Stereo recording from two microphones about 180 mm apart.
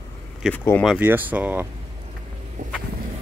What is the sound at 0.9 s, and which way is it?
Speech, 10° right (ahead or behind).